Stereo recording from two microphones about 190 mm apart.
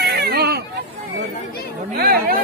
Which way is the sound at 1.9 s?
50° right (ahead or behind).